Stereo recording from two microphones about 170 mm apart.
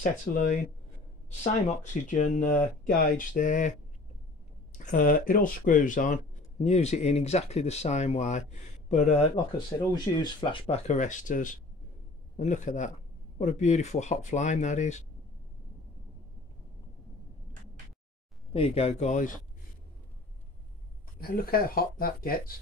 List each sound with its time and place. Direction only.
0.3 s speech: 40° left (ahead or behind)
4.7 s speech: 50° left (ahead or behind)
9.9 s speech: 25° left (ahead or behind)
10.9 s speech: 45° left (ahead or behind)
18.5 s speech: 35° left (ahead or behind)
21.2 s speech: 60° left (ahead or behind)